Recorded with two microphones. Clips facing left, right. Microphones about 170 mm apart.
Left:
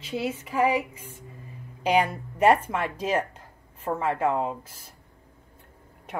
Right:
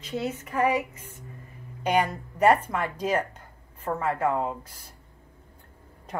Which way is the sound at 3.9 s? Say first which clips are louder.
Left 1 dB; 25° left (ahead or behind).